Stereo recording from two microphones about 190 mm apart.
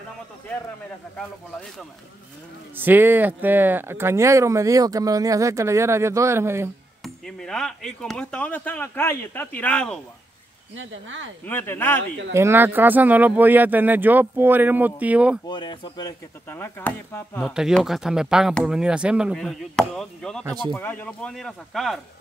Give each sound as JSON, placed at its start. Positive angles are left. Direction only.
{"t": 2.7, "sound": "speech", "side_deg": -10}
{"t": 7.0, "sound": "speech", "side_deg": 5}
{"t": 10.8, "sound": "speech", "side_deg": -90}
{"t": 11.4, "sound": "speech", "side_deg": 10}
{"t": 12.4, "sound": "speech", "side_deg": -10}
{"t": 15.4, "sound": "speech", "side_deg": 25}
{"t": 17.4, "sound": "speech", "side_deg": 0}